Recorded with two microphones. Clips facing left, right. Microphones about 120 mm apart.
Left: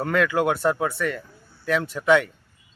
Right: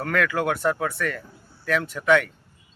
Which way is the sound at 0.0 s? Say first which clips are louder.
Left 2 dB; 25° left (ahead or behind).